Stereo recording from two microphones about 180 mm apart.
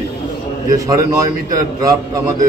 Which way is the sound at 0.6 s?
20° right (ahead or behind).